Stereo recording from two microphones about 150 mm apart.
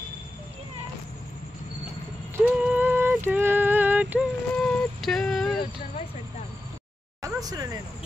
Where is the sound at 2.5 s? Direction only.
10° right (ahead or behind).